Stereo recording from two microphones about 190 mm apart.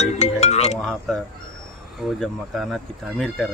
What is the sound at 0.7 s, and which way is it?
Speech, 5° left (ahead or behind).